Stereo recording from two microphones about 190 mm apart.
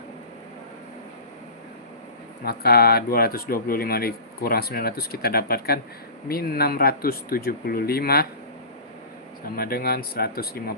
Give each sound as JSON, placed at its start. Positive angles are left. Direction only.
{"t": 2.4, "sound": "speech", "side_deg": 55}
{"t": 9.6, "sound": "speech", "side_deg": 50}